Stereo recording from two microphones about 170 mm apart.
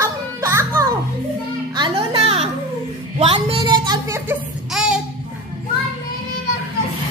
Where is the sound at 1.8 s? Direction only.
30° right (ahead or behind).